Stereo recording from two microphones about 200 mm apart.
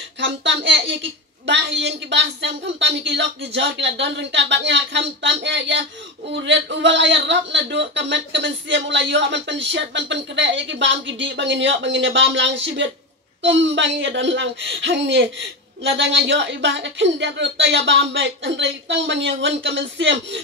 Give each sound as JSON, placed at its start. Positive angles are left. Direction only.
{"t": 0.2, "sound": "a woman's voice", "side_deg": -65}